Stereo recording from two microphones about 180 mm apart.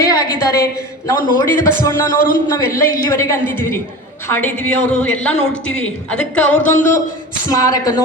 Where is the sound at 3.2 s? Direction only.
15° left (ahead or behind).